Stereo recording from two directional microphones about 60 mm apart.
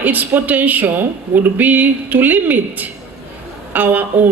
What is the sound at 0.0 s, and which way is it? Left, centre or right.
A woman's voice, right.